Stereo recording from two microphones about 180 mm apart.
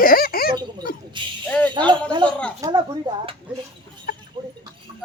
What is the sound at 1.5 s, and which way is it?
Speech, 5° left (ahead or behind).